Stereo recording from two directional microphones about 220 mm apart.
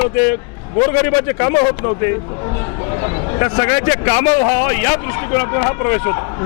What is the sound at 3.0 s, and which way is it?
A man's voice, 20° left (ahead or behind).